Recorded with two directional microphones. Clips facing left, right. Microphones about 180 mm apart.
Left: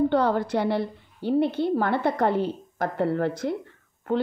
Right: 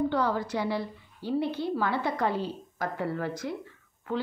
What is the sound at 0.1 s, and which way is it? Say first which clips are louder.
A woman's voice: left 6 dB; 60° left (ahead or behind).